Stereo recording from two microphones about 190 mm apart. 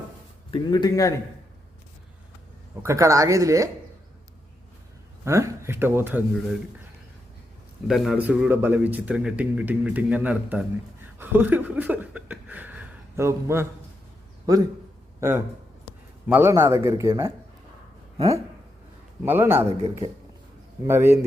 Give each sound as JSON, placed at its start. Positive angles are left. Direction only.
{"t": 0.5, "sound": "a man's voice", "side_deg": 20}
{"t": 2.8, "sound": "a man's voice", "side_deg": -15}
{"t": 5.2, "sound": "a man's voice", "side_deg": -15}
{"t": 7.9, "sound": "a man's voice", "side_deg": 0}
{"t": 19.2, "sound": "a man's voice", "side_deg": -10}